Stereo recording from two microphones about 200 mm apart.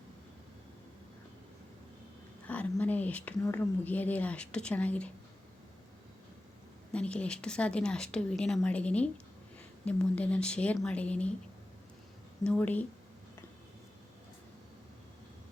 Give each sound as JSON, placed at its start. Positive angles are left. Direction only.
{"t": 2.5, "sound": "speech", "side_deg": 10}
{"t": 6.9, "sound": "speech", "side_deg": 5}
{"t": 12.5, "sound": "speech", "side_deg": 5}